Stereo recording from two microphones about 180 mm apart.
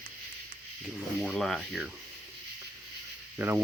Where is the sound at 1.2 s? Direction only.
Centre (ahead or behind).